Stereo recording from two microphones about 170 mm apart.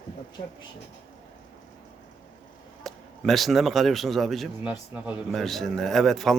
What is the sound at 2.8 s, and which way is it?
Speech, centre (ahead or behind).